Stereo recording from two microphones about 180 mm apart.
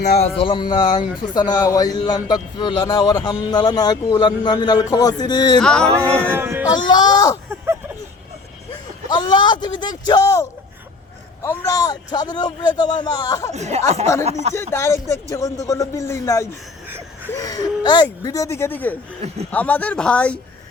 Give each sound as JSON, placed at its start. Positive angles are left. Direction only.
{"t": 0.3, "sound": "speech", "side_deg": 30}
{"t": 5.5, "sound": "a sound", "side_deg": 5}
{"t": 6.3, "sound": "speech", "side_deg": -15}
{"t": 6.7, "sound": "speech", "side_deg": 25}
{"t": 7.5, "sound": "a sound", "side_deg": -15}
{"t": 9.0, "sound": "speech", "side_deg": 25}
{"t": 11.4, "sound": "speech", "side_deg": 20}
{"t": 13.5, "sound": "speech", "side_deg": -40}
{"t": 14.5, "sound": "speech", "side_deg": 15}